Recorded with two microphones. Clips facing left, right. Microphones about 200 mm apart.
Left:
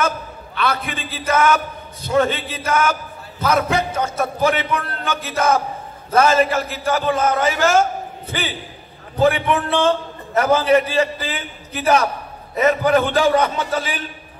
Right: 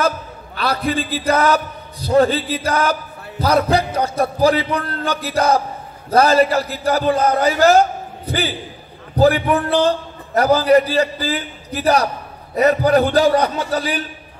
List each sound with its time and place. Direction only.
0.6 s a man's voice: 35° right (ahead or behind)